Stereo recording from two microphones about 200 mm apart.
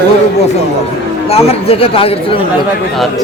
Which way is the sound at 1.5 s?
30° left (ahead or behind).